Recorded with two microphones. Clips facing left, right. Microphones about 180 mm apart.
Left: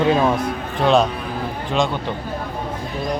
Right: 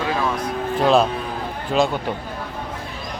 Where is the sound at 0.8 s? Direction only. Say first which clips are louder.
Left 1 dB; centre (ahead or behind).